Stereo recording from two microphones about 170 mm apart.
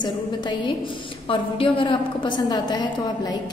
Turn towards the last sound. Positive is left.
turn(degrees=25)  # may be behind; listen again after turning